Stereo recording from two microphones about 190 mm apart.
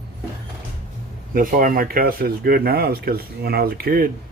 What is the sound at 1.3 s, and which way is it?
Speech, 45° right (ahead or behind).